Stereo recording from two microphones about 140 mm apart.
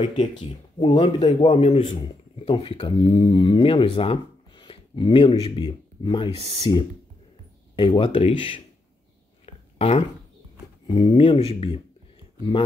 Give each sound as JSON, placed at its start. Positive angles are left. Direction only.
{"t": 0.5, "sound": "speech", "side_deg": 35}
{"t": 1.5, "sound": "a man's voice", "side_deg": 55}
{"t": 1.8, "sound": "speech", "side_deg": 40}
{"t": 7.7, "sound": "speech", "side_deg": 35}
{"t": 9.5, "sound": "a sound", "side_deg": 45}
{"t": 10.9, "sound": "speech", "side_deg": 35}